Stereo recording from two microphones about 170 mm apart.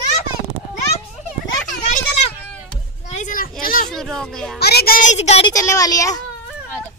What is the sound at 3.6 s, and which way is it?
Speech, 55° left (ahead or behind).